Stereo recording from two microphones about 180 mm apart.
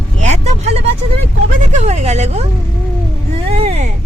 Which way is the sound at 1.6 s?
40° right (ahead or behind).